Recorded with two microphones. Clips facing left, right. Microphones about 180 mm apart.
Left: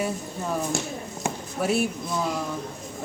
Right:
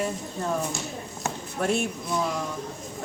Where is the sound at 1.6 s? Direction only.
5° left (ahead or behind).